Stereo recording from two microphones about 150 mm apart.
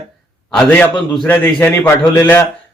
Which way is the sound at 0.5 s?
10° left (ahead or behind).